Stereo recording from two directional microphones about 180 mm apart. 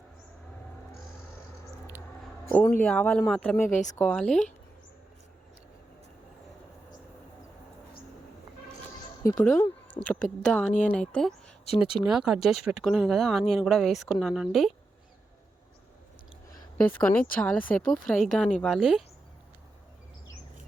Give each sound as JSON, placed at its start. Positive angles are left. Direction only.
{"t": 2.5, "sound": "speech", "side_deg": 10}
{"t": 3.7, "sound": "speech", "side_deg": 40}
{"t": 3.9, "sound": "speech", "side_deg": 5}
{"t": 9.2, "sound": "speech", "side_deg": 15}
{"t": 10.5, "sound": "speech", "side_deg": 5}
{"t": 16.7, "sound": "speech", "side_deg": 10}